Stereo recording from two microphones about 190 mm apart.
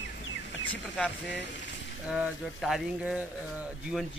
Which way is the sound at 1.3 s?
70° left (ahead or behind).